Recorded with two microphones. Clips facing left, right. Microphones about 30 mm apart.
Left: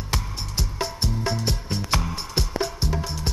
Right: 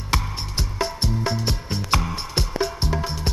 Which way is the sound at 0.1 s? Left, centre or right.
Right.